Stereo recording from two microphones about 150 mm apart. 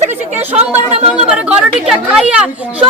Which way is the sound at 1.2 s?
10° right (ahead or behind).